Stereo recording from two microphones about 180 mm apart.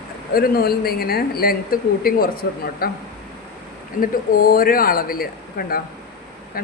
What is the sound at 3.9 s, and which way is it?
Speech, 55° left (ahead or behind).